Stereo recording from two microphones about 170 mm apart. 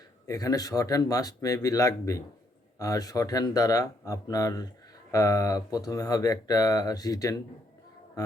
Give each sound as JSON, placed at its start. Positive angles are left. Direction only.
{"t": 0.3, "sound": "speech", "side_deg": 20}